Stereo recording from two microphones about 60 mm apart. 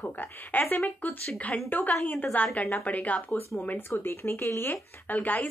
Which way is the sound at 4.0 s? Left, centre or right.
Left.